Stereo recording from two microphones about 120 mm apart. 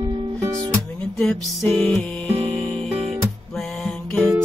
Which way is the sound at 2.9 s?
60° right (ahead or behind).